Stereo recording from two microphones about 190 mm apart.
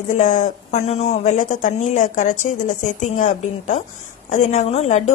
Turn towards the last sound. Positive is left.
turn(degrees=35)  # may be behind; listen again after turning